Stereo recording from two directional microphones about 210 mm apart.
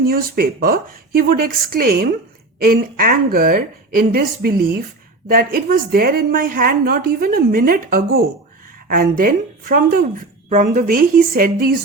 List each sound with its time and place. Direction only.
0.0 s a woman's voice: 45° right (ahead or behind)